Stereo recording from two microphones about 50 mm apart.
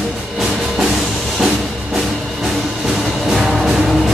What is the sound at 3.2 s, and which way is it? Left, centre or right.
Music, centre.